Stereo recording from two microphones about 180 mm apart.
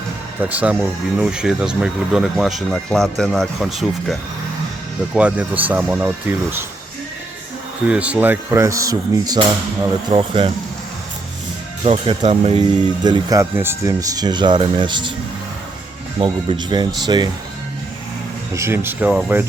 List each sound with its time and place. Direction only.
0.4 s speech: 10° right (ahead or behind)
7.9 s speech: 5° right (ahead or behind); by 10.5 s 30° right (ahead or behind)
11.9 s speech: 35° right (ahead or behind)
16.1 s speech: 30° right (ahead or behind)
18.5 s speech: 15° right (ahead or behind)